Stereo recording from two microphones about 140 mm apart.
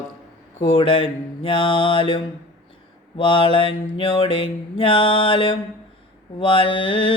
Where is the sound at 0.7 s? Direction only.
40° left (ahead or behind).